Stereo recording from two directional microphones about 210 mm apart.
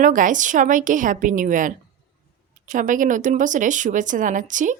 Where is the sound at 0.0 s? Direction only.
40° right (ahead or behind).